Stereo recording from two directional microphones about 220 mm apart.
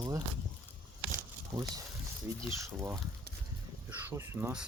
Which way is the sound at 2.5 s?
15° right (ahead or behind).